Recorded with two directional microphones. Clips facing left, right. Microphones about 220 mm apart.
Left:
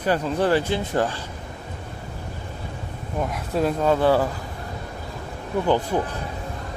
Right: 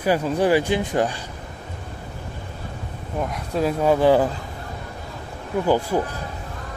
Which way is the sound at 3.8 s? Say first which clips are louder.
Right 3 dB; 15° right (ahead or behind).